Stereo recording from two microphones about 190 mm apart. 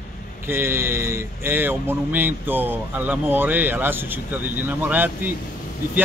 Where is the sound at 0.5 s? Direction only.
15° right (ahead or behind).